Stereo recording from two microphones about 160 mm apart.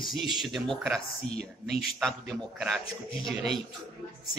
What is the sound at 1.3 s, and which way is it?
Speech, 90° right.